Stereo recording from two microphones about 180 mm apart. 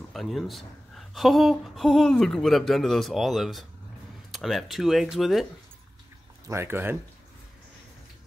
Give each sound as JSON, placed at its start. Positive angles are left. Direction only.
{"t": 0.1, "sound": "speech", "side_deg": 0}
{"t": 6.4, "sound": "speech", "side_deg": -15}